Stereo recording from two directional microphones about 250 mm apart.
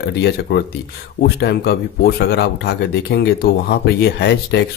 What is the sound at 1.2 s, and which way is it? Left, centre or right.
Speech, left.